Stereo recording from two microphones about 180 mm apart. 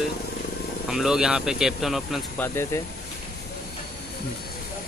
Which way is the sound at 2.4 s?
15° left (ahead or behind).